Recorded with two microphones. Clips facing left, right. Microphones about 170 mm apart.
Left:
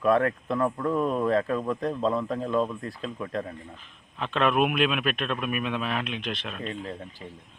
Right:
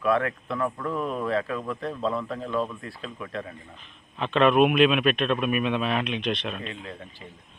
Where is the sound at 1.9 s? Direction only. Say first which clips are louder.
Left 1 dB; 15° left (ahead or behind).